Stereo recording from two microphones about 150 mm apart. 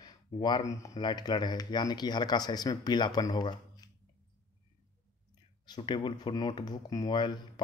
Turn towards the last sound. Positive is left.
turn(degrees=30)  # may be behind; listen again after turning